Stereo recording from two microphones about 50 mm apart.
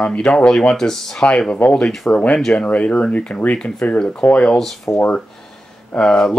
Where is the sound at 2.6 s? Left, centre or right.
Left.